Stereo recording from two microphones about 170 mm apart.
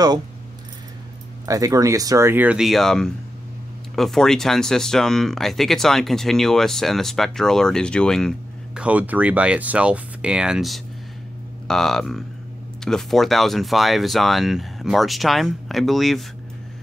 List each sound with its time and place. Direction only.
1.4 s speech: 20° right (ahead or behind); by 8.8 s 5° left (ahead or behind)
8.8 s speech: 10° right (ahead or behind)